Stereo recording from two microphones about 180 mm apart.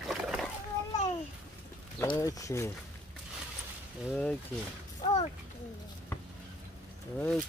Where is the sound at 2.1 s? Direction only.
20° left (ahead or behind).